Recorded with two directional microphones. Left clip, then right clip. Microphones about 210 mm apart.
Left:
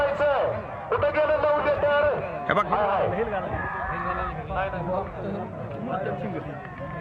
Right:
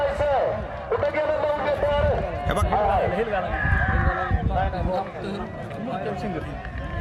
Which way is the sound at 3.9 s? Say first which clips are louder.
Right 3 dB; 25° right (ahead or behind).